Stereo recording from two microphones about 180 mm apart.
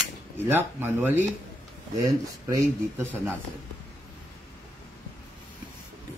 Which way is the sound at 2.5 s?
15° right (ahead or behind).